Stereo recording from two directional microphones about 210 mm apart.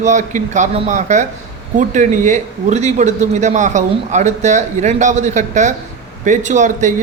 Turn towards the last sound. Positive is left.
turn(degrees=-35)  # may be behind; listen again after turning